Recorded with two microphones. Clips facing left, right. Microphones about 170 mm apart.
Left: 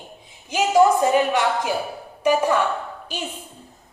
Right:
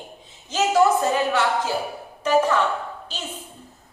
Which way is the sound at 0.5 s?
10° left (ahead or behind).